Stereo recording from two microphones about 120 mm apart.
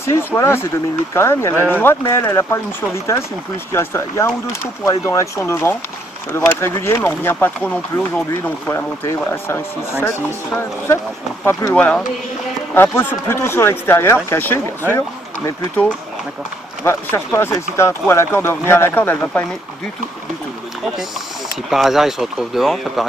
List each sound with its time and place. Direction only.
0.0 s speech: 20° left (ahead or behind)
3.7 s speech: 20° left (ahead or behind)
11.7 s speech: 10° left (ahead or behind)
16.8 s speech: 20° left (ahead or behind)
21.6 s speech: centre (ahead or behind)